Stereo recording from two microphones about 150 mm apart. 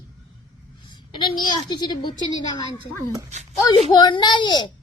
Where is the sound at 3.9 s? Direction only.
30° left (ahead or behind).